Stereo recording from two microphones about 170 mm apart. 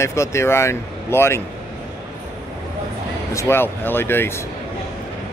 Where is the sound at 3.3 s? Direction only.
15° left (ahead or behind).